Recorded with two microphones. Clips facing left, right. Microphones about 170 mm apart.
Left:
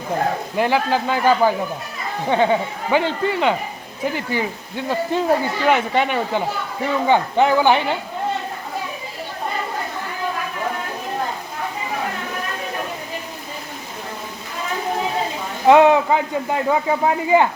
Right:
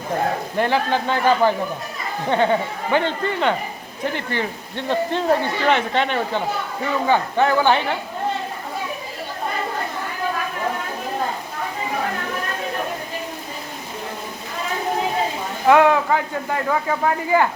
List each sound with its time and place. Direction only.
0.5 s speech: 10° left (ahead or behind)
15.6 s speech: 20° left (ahead or behind)